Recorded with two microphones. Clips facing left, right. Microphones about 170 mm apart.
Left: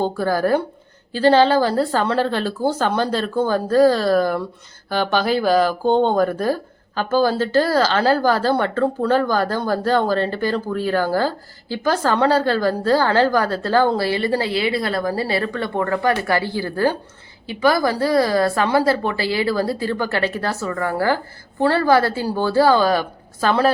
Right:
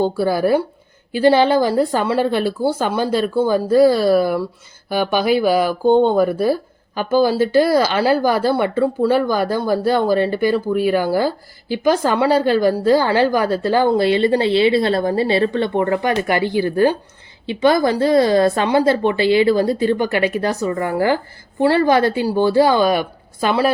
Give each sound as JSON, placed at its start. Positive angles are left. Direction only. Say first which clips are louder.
{"t": 0.0, "sound": "a woman's voice", "louder": "right 3 dB", "side_deg": -10}